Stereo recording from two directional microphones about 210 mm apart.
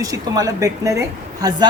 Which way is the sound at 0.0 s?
15° right (ahead or behind).